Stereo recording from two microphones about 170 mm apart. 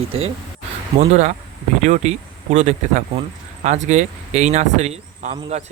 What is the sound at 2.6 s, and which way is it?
Speech, 35° right (ahead or behind).